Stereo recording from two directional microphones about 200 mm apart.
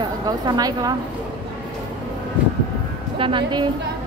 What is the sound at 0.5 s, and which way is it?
Speech, 20° right (ahead or behind).